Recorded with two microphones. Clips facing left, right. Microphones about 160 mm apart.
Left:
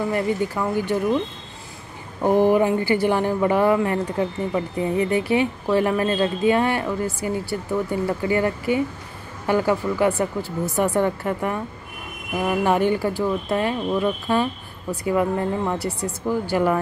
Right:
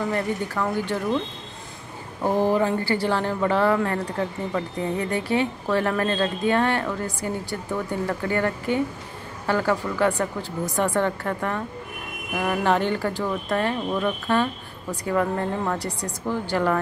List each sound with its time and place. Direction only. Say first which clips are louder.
0.0 s speech: left 3 dB; 10° left (ahead or behind)
2.2 s speech: left 4 dB; 15° left (ahead or behind)